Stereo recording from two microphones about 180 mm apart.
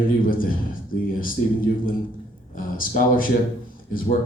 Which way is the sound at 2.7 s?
50° left (ahead or behind).